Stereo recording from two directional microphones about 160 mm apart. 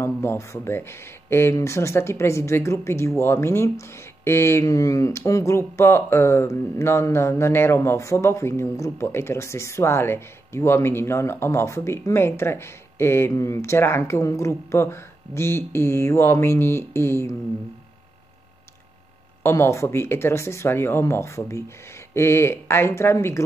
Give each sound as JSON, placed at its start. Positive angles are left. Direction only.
{"t": 0.0, "sound": "speech", "side_deg": 15}
{"t": 19.4, "sound": "speech", "side_deg": 15}